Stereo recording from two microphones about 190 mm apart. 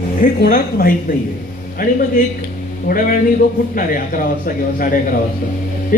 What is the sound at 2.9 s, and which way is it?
A man's voice, 40° left (ahead or behind).